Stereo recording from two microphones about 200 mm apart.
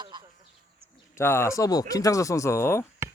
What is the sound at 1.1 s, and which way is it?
Speech, 10° left (ahead or behind).